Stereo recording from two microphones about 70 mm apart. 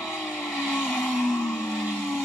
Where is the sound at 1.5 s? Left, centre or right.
Centre.